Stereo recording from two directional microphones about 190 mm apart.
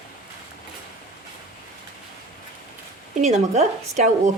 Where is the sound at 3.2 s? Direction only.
35° right (ahead or behind).